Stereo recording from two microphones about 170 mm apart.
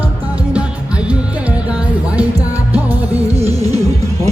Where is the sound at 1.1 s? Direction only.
10° right (ahead or behind).